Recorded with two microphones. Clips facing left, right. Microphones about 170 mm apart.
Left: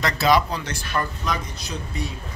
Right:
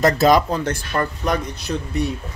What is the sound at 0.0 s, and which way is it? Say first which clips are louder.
Speech: right 5 dB; 45° right (ahead or behind).